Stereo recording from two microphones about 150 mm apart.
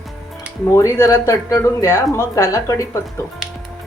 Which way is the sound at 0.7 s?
20° left (ahead or behind).